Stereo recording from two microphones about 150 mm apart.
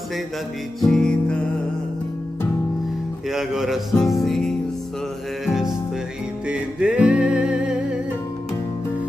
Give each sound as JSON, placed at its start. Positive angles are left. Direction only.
{"t": 0.7, "sound": "music", "side_deg": 5}
{"t": 3.3, "sound": "speech", "side_deg": -5}
{"t": 4.0, "sound": "music", "side_deg": 0}